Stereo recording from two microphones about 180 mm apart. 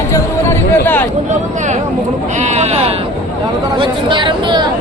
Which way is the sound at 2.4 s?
40° right (ahead or behind).